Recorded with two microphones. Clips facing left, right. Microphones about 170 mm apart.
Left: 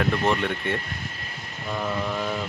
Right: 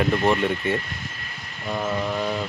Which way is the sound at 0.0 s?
5° right (ahead or behind).